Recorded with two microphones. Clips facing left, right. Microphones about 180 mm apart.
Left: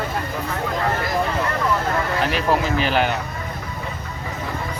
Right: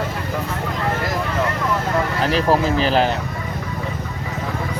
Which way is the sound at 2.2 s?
35° right (ahead or behind).